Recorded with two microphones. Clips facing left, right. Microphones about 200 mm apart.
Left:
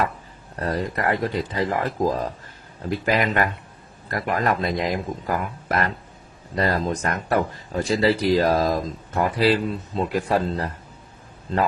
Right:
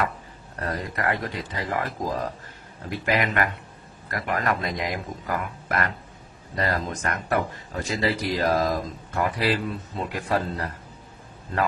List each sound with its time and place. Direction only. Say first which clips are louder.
0.6 s speech: left 4 dB; 30° left (ahead or behind)